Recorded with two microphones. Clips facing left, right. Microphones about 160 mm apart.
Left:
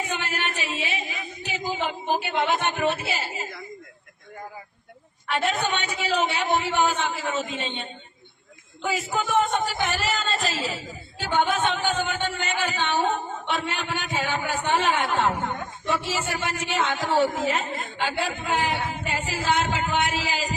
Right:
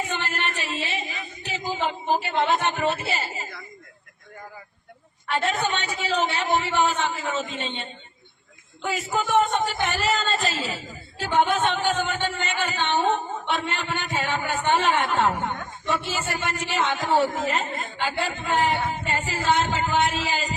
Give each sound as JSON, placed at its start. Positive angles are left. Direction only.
{"t": 0.0, "sound": "a sound", "side_deg": 0}
{"t": 2.3, "sound": "speech", "side_deg": 0}
{"t": 5.3, "sound": "speech", "side_deg": 0}